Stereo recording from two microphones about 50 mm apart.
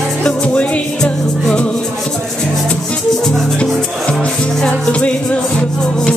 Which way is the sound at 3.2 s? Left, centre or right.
Centre.